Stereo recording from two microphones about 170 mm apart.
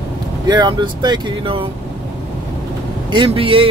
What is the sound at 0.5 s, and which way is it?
Speech, 25° right (ahead or behind).